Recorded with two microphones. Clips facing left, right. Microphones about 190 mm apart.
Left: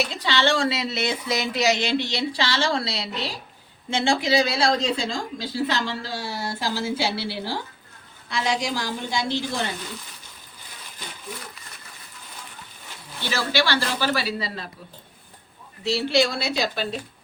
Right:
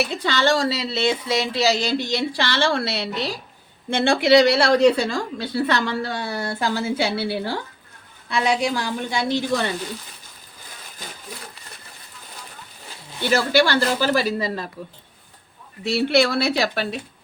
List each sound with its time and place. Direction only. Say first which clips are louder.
0.0 s speech: right 2 dB; 55° right (ahead or behind)
13.7 s speech: right 4 dB; 45° right (ahead or behind)
15.8 s speech: right 3 dB; 60° right (ahead or behind)